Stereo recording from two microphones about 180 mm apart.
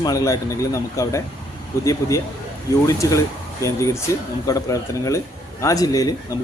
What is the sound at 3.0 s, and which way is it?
Speech, 20° left (ahead or behind).